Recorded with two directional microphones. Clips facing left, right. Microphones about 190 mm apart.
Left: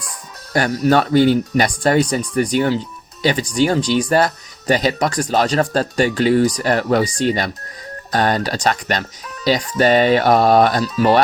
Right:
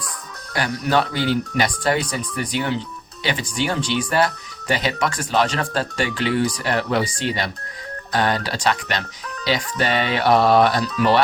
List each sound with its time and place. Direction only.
0.5 s speech: 45° left (ahead or behind)